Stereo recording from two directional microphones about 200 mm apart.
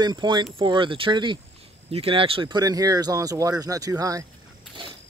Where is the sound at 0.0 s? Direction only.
20° right (ahead or behind).